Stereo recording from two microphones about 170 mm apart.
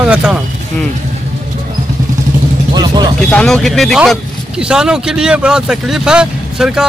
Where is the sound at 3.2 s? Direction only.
5° left (ahead or behind).